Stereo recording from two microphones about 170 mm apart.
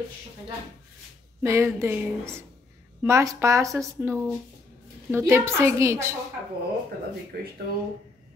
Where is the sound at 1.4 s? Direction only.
15° right (ahead or behind).